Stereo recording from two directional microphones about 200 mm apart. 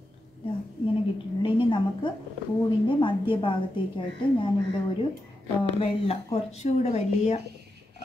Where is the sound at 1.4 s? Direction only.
25° left (ahead or behind).